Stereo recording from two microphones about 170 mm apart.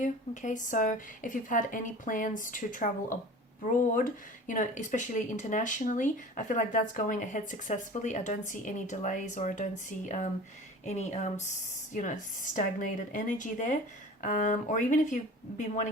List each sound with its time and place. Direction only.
0.0 s speech: 45° left (ahead or behind)